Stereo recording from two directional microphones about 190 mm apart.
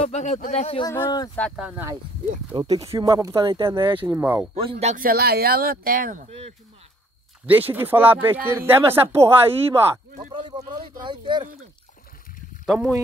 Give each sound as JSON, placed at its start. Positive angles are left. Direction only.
{"t": 0.0, "sound": "speech", "side_deg": 35}
{"t": 0.9, "sound": "speech", "side_deg": 15}
{"t": 1.6, "sound": "speech", "side_deg": -10}
{"t": 2.5, "sound": "speech", "side_deg": -25}
{"t": 4.1, "sound": "speech", "side_deg": -10}
{"t": 4.6, "sound": "speech", "side_deg": -30}
{"t": 5.0, "sound": "speech", "side_deg": -55}
{"t": 7.4, "sound": "speech", "side_deg": -10}
{"t": 9.7, "sound": "speech", "side_deg": -30}
{"t": 12.6, "sound": "speech", "side_deg": 0}